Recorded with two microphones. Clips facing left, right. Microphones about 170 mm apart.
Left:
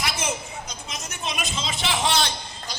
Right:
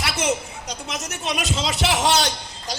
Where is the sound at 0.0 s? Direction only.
70° right (ahead or behind).